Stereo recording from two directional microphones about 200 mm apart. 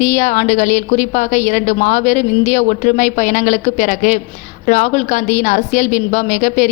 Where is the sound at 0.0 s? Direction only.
40° left (ahead or behind).